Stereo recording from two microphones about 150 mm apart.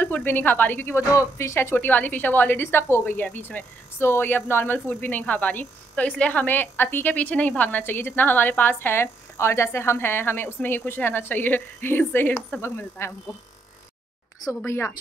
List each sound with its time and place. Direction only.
0.0 s a woman's voice: 10° left (ahead or behind)
14.4 s a woman's voice: 20° left (ahead or behind)